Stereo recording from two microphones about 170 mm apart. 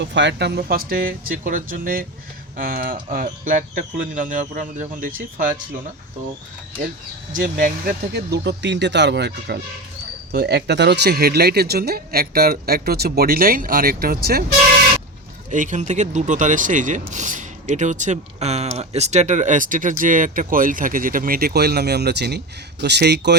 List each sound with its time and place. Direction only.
0.0 s speech: 90° right; by 5.5 s 50° right (ahead or behind)
7.3 s speech: 55° right (ahead or behind); by 9.6 s 80° right
10.3 s speech: 70° right (ahead or behind)
15.4 s speech: 50° right (ahead or behind); by 23.4 s 80° right